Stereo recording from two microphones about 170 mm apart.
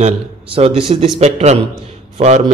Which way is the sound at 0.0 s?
35° right (ahead or behind).